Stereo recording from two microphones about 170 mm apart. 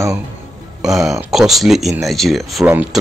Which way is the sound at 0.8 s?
Centre (ahead or behind).